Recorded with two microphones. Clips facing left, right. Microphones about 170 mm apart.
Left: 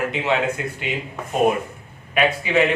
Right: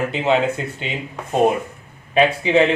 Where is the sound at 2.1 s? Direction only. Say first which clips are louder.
Right 4 dB; 30° right (ahead or behind).